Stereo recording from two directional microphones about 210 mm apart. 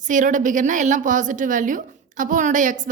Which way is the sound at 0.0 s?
40° right (ahead or behind).